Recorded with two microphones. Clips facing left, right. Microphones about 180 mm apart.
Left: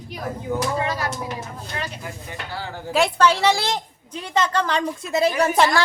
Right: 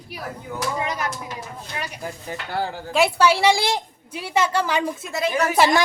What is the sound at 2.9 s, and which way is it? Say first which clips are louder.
A woman's voice: even; 5° right (ahead or behind).